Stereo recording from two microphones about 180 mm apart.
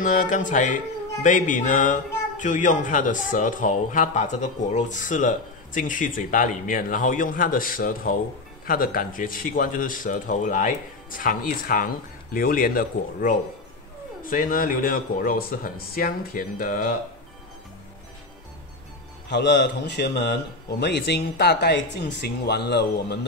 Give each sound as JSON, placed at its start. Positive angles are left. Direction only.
{"t": 0.0, "sound": "a man's voice", "side_deg": 45}
{"t": 19.2, "sound": "speech", "side_deg": 70}